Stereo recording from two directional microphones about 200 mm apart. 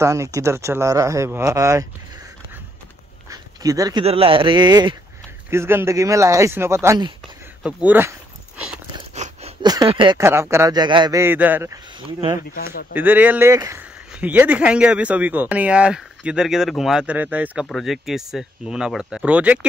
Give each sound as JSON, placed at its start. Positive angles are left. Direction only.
{"t": 0.0, "sound": "speech", "side_deg": -15}
{"t": 3.3, "sound": "dog", "side_deg": -15}
{"t": 4.0, "sound": "speech", "side_deg": -30}
{"t": 9.1, "sound": "a sound", "side_deg": -35}
{"t": 9.6, "sound": "speech", "side_deg": -20}
{"t": 12.9, "sound": "speech", "side_deg": -10}